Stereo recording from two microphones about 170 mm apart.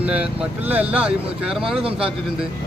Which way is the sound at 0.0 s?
5° right (ahead or behind).